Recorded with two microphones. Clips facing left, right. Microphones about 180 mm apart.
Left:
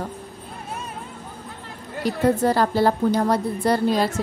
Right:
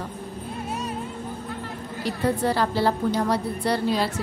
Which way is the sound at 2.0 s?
45° left (ahead or behind).